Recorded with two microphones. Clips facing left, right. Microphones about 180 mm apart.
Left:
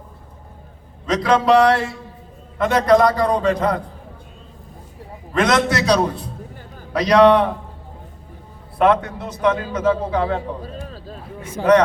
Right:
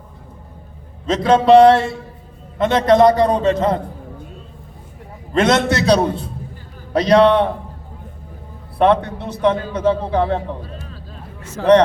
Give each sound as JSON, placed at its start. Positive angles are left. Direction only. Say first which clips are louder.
{"t": 1.0, "sound": "a man's voice", "louder": "right 3 dB", "side_deg": -25}
{"t": 5.3, "sound": "a man's voice", "louder": "right 2 dB", "side_deg": -30}
{"t": 8.8, "sound": "a man's voice", "louder": "right 2 dB", "side_deg": -30}
{"t": 11.6, "sound": "speech", "louder": "right 2 dB", "side_deg": 15}